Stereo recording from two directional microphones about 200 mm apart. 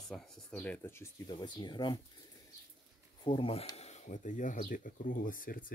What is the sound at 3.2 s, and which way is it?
Speech, 25° left (ahead or behind).